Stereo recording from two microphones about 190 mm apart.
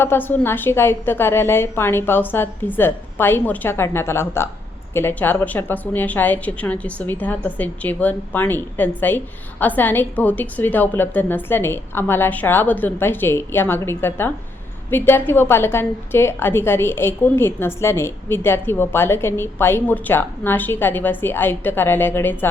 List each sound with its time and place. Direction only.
0.0 s a woman's voice: 10° left (ahead or behind)